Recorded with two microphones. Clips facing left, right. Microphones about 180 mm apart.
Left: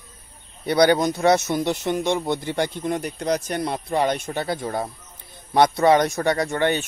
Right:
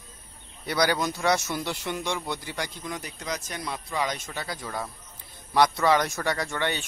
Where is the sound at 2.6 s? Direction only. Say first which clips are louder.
Left 10 dB; 60° left (ahead or behind).